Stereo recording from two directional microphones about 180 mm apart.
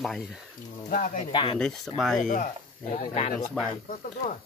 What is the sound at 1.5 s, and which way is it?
Speech, 5° left (ahead or behind).